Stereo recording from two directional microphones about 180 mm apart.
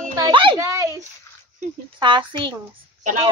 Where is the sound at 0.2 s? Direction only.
25° right (ahead or behind).